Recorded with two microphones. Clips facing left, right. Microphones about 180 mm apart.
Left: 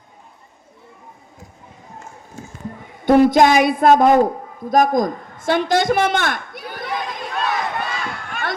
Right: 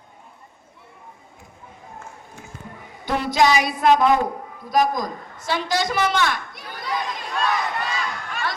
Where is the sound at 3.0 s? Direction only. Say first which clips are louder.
Left 8 dB; 50° left (ahead or behind).